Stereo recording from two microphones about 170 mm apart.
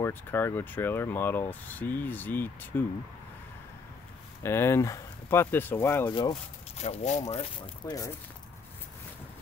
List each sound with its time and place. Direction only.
0.0 s speech: 15° left (ahead or behind)
4.4 s speech: 15° left (ahead or behind)
6.8 s speech: 40° left (ahead or behind)